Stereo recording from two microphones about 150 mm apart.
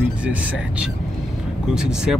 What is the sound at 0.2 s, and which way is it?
Speech, 10° right (ahead or behind).